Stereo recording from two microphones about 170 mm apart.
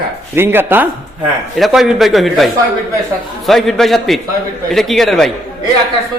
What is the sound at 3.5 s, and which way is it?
Speech, centre (ahead or behind).